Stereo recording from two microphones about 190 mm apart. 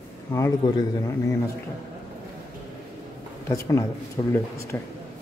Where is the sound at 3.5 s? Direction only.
20° left (ahead or behind).